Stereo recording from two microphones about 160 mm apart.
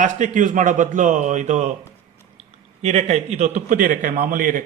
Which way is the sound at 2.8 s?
45° right (ahead or behind).